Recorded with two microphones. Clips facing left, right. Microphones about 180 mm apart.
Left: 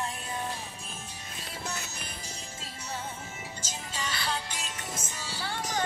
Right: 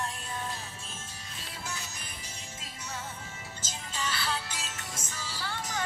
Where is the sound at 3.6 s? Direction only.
10° left (ahead or behind).